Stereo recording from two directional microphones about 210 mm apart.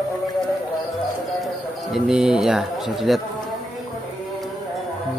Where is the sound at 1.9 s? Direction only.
5° right (ahead or behind).